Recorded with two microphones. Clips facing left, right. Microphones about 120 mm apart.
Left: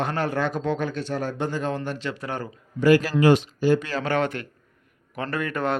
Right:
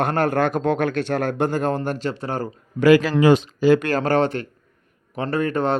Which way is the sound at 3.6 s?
90° right.